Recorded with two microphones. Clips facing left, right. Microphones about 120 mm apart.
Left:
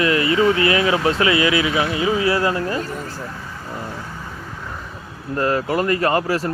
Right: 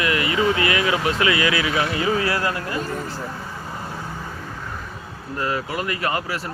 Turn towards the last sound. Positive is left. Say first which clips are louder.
# left 6 dB
turn(degrees=40)  # may be behind; listen again after turning